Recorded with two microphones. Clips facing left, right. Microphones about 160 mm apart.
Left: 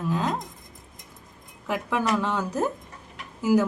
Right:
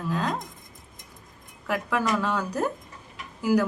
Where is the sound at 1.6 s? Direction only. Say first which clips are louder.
Even; 20° left (ahead or behind).